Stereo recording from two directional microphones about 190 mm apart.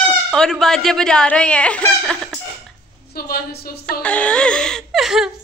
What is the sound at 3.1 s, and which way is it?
Speech, 55° left (ahead or behind).